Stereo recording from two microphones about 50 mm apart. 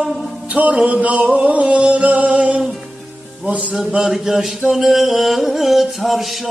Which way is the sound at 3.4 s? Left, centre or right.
Centre.